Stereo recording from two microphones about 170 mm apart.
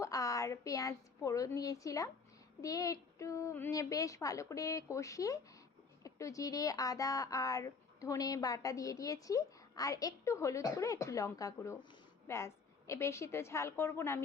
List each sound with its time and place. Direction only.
0.0 s a woman's voice: 20° left (ahead or behind)